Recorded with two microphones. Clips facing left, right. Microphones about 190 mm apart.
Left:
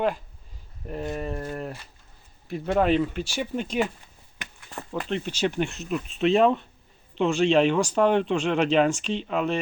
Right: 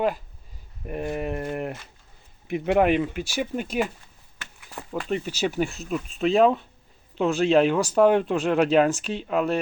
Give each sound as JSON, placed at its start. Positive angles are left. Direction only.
{"t": 0.9, "sound": "speech", "side_deg": -15}